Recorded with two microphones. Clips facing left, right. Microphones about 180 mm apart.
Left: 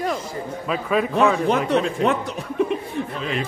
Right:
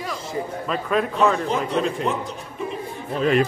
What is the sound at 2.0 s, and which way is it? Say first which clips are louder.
Speech: left 4 dB; 70° left (ahead or behind).